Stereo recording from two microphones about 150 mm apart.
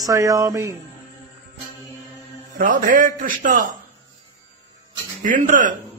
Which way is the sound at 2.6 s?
65° right (ahead or behind).